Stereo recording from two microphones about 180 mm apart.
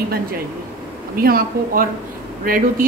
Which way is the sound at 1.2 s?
55° right (ahead or behind).